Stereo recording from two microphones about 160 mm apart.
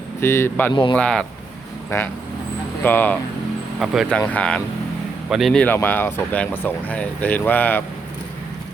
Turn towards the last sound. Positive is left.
turn(degrees=10)  # may be behind; listen again after turning